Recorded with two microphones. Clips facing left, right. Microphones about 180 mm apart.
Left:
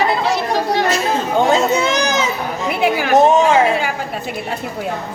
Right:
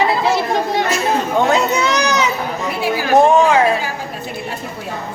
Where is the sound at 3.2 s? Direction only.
25° left (ahead or behind).